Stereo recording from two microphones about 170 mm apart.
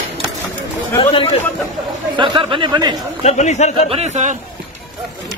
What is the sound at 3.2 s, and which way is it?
Speech, 40° left (ahead or behind).